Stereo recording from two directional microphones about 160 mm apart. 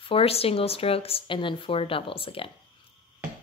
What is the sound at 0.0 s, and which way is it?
Speech, 35° left (ahead or behind).